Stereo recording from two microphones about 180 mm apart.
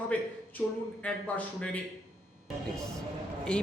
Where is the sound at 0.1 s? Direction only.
10° left (ahead or behind).